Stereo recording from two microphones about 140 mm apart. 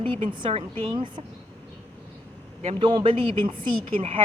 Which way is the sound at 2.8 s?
35° right (ahead or behind).